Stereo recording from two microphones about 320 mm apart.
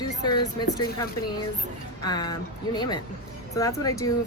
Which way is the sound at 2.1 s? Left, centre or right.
Centre.